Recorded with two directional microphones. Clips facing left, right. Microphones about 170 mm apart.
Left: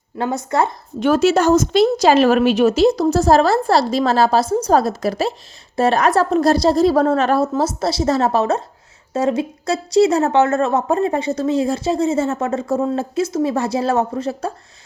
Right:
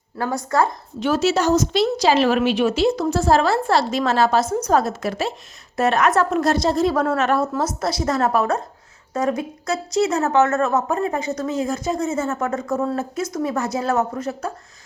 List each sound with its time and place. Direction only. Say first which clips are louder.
0.2 s a woman's voice: left 1 dB; 20° left (ahead or behind)
0.9 s a woman's voice: left 5 dB; 55° left (ahead or behind); by 14.5 s 30° left (ahead or behind)